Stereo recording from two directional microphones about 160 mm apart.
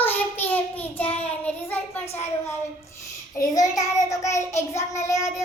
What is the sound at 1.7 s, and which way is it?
Speech, 15° left (ahead or behind).